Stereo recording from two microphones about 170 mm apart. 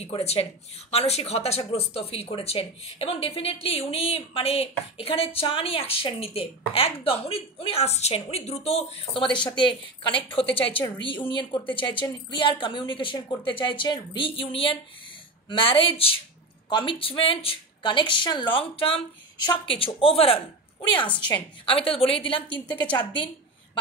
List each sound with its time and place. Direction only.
0.0 s a woman's voice: 40° left (ahead or behind)